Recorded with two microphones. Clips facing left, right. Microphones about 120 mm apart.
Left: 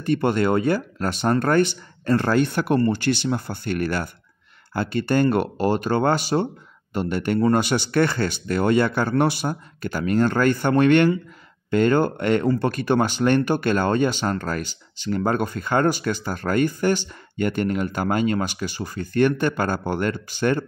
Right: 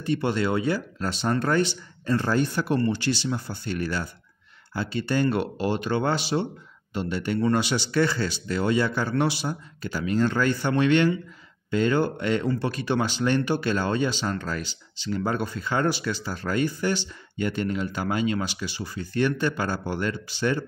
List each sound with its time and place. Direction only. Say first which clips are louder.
0.0 s speech: left 4 dB; 55° left (ahead or behind)